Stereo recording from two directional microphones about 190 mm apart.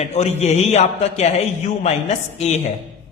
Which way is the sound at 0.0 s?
35° left (ahead or behind).